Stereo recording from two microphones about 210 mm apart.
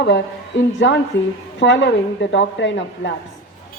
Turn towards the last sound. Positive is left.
turn(degrees=60)  # may be behind; listen again after turning